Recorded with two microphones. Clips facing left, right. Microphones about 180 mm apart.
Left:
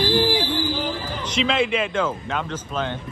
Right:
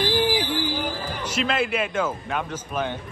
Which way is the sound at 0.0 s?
10° right (ahead or behind).